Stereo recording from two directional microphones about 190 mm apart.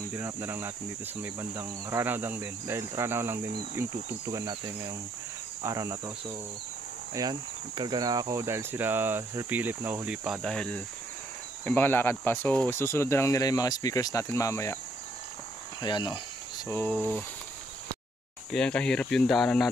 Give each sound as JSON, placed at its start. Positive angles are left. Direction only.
{"t": 0.1, "sound": "speech", "side_deg": -10}
{"t": 7.2, "sound": "speech", "side_deg": -20}
{"t": 15.8, "sound": "speech", "side_deg": 25}
{"t": 16.6, "sound": "speech", "side_deg": 10}
{"t": 18.5, "sound": "speech", "side_deg": 5}